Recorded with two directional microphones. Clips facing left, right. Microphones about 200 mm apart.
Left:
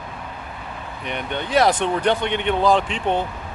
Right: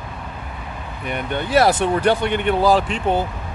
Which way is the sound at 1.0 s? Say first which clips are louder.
Right 3 dB; 5° right (ahead or behind).